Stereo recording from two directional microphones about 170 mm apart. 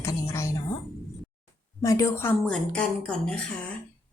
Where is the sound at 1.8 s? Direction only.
20° left (ahead or behind).